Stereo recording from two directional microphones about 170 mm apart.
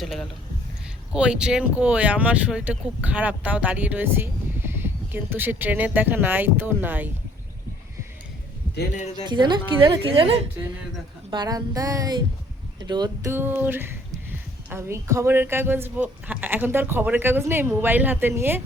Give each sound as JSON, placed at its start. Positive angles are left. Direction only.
{"t": 0.0, "sound": "speech", "side_deg": 0}
{"t": 9.2, "sound": "a woman's voice", "side_deg": -25}
{"t": 13.3, "sound": "speech", "side_deg": -10}